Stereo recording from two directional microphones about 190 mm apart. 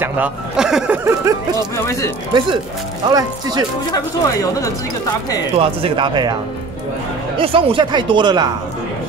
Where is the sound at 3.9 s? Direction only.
20° left (ahead or behind).